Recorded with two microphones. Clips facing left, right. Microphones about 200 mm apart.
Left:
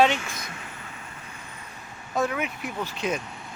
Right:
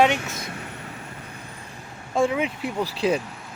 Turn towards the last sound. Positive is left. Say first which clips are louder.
# right 6 dB
turn(degrees=-30)  # may be behind; listen again after turning